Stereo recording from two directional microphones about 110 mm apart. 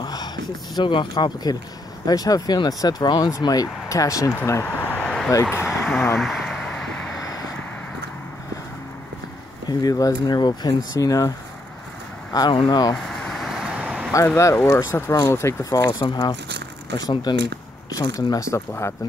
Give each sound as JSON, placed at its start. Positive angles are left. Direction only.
{"t": 0.0, "sound": "a sound", "side_deg": 40}
{"t": 0.7, "sound": "speech", "side_deg": 45}
{"t": 4.9, "sound": "a sound", "side_deg": 5}
{"t": 5.3, "sound": "speech", "side_deg": 20}
{"t": 6.1, "sound": "a sound", "side_deg": 0}
{"t": 9.7, "sound": "speech", "side_deg": 35}
{"t": 12.9, "sound": "vehicle", "side_deg": 0}
{"t": 14.1, "sound": "speech", "side_deg": 25}
{"t": 15.9, "sound": "speech", "side_deg": 40}